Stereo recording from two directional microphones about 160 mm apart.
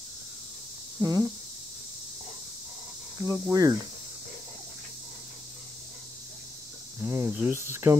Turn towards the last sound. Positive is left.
turn(degrees=-15)  # may be behind; listen again after turning